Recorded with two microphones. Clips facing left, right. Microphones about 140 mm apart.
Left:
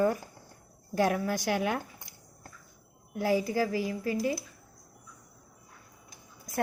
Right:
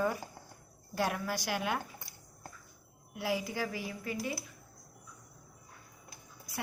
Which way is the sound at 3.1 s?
45° left (ahead or behind).